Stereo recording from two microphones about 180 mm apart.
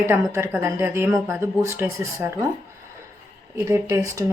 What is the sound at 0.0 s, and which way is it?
Speech, 15° right (ahead or behind).